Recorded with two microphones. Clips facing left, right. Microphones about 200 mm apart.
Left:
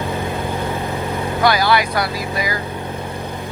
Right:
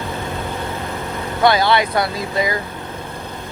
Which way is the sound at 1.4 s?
25° right (ahead or behind).